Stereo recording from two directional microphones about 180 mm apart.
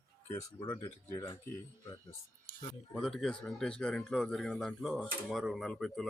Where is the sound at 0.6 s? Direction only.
20° left (ahead or behind).